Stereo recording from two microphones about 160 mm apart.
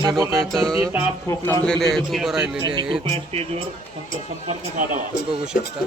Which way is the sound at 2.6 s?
30° right (ahead or behind).